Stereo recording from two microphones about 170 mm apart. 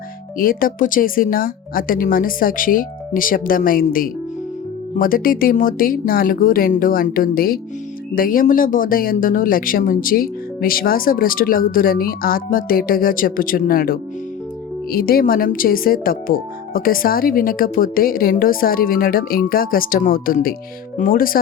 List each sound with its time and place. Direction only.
0.3 s speech: 55° left (ahead or behind)